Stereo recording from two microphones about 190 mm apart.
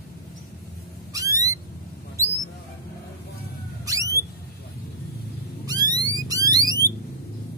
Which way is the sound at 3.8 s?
15° right (ahead or behind).